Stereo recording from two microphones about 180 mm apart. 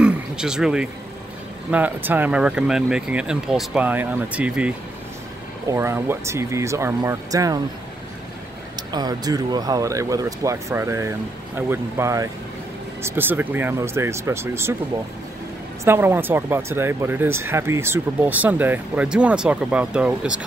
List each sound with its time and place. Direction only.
0.0 s a sound: 5° right (ahead or behind)
1.7 s speech: 10° right (ahead or behind)
8.7 s speech: 20° right (ahead or behind)
15.8 s speech: 10° right (ahead or behind)